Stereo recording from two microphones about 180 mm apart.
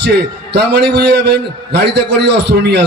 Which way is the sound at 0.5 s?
70° right (ahead or behind).